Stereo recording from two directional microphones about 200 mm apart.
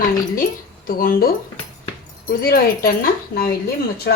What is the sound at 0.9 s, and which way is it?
Speech, 45° left (ahead or behind).